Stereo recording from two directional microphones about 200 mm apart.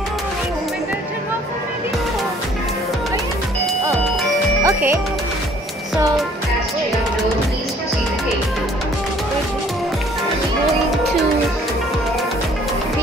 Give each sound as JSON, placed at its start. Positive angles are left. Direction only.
{"t": 4.6, "sound": "music", "side_deg": -15}